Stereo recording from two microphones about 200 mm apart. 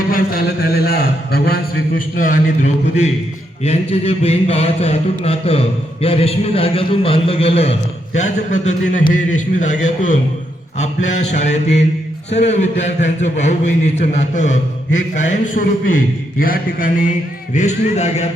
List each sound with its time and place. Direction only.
0.1 s speech: 50° left (ahead or behind)
2.1 s mantra: 40° left (ahead or behind)